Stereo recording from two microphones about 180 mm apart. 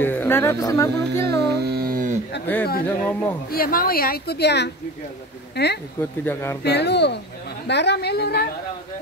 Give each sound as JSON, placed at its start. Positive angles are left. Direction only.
{"t": 0.0, "sound": "speech", "side_deg": 10}
{"t": 1.6, "sound": "a sound", "side_deg": -60}
{"t": 2.4, "sound": "speech", "side_deg": 10}
{"t": 3.4, "sound": "a woman's voice", "side_deg": 55}
{"t": 5.9, "sound": "speech", "side_deg": 10}
{"t": 6.6, "sound": "a woman's voice", "side_deg": 65}